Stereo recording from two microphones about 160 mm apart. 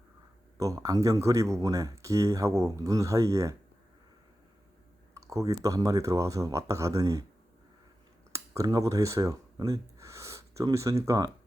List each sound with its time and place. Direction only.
0.6 s speech: 20° right (ahead or behind)
5.1 s speech: 20° right (ahead or behind)
8.3 s speech: 20° right (ahead or behind)